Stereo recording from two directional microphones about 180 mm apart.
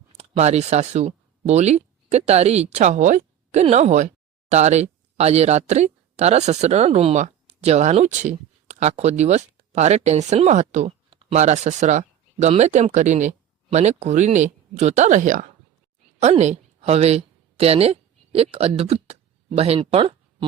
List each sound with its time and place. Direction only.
0.2 s a woman's voice: 40° right (ahead or behind)